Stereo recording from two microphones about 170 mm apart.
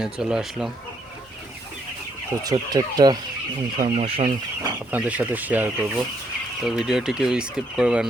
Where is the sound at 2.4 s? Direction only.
20° right (ahead or behind).